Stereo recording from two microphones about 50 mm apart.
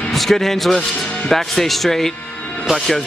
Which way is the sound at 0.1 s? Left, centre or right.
Centre.